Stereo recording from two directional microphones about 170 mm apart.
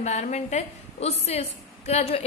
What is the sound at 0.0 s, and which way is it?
A woman's voice, 40° left (ahead or behind).